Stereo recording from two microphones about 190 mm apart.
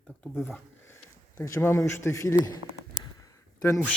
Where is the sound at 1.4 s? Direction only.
15° left (ahead or behind).